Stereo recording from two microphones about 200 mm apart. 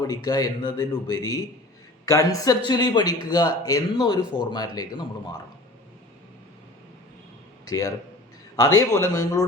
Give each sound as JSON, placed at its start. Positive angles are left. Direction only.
{"t": 0.0, "sound": "a man's voice", "side_deg": 20}
{"t": 7.6, "sound": "speech", "side_deg": 20}